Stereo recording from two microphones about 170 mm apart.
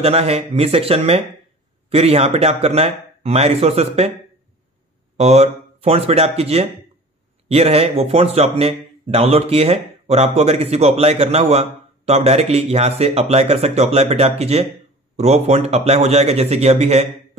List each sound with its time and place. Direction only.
0.0 s a man's voice: 35° right (ahead or behind)
5.1 s a man's voice: 40° right (ahead or behind)